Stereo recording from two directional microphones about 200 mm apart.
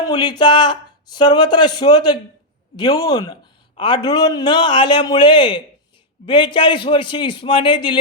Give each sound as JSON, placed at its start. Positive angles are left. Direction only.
{"t": 0.0, "sound": "speech", "side_deg": 20}